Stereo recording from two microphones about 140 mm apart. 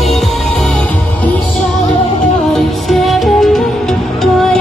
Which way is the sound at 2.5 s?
Centre (ahead or behind).